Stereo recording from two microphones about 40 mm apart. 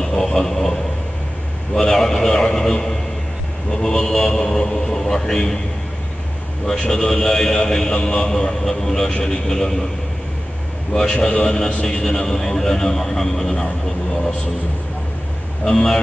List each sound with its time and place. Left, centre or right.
0.0 s speech: centre
1.8 s a man's voice: centre
6.6 s a man's voice: centre
11.0 s a man's voice: centre
11.4 s a man's voice: centre
15.7 s a man's voice: centre